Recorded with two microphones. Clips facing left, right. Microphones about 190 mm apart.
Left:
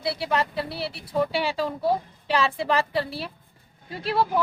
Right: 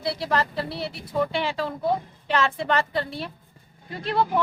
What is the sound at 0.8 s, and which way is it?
Speech, 30° left (ahead or behind).